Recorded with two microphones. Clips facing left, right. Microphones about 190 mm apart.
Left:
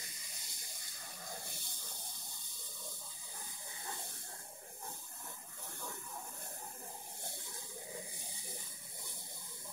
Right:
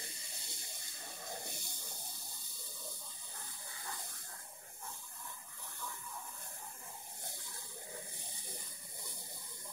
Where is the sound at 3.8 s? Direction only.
25° left (ahead or behind).